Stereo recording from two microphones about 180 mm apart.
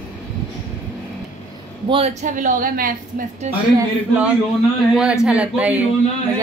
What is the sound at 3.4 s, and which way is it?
Speech, 40° right (ahead or behind).